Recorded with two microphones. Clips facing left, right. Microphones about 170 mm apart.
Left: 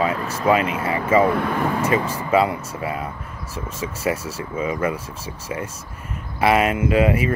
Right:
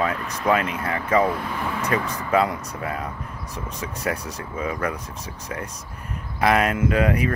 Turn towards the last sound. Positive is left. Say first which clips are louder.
# left 3 dB
turn(degrees=5)  # may be behind; listen again after turning